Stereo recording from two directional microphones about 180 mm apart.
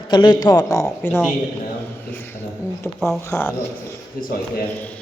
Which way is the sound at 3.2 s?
15° left (ahead or behind).